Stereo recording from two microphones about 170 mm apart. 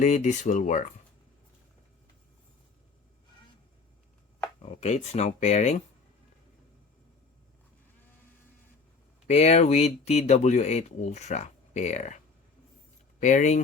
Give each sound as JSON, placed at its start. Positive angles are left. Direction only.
{"t": 0.0, "sound": "speech", "side_deg": 45}
{"t": 4.6, "sound": "speech", "side_deg": 40}
{"t": 9.2, "sound": "speech", "side_deg": 40}